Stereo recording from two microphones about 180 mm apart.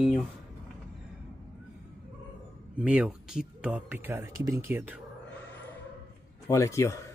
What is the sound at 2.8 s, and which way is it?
Speech, 5° right (ahead or behind).